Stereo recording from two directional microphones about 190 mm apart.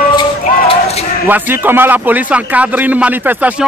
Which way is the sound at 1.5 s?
10° right (ahead or behind).